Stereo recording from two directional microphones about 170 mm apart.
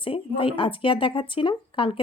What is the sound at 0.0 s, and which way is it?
Speech, 30° left (ahead or behind).